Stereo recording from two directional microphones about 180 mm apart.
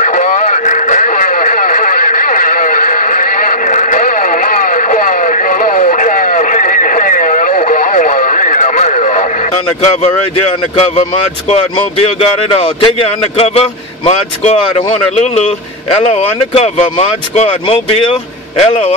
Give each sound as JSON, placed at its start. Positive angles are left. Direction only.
{"t": 0.0, "sound": "radio", "side_deg": 45}
{"t": 12.0, "sound": "speech", "side_deg": 35}